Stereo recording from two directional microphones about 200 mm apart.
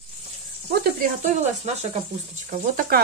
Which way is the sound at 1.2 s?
30° right (ahead or behind).